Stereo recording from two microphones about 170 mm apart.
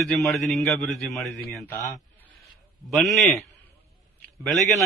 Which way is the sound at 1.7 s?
20° left (ahead or behind).